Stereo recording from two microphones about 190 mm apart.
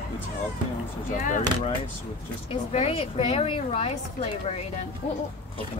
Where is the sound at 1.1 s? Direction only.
40° left (ahead or behind).